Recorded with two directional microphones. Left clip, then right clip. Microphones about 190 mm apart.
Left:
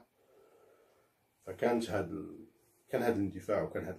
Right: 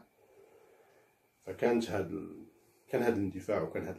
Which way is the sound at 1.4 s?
5° left (ahead or behind).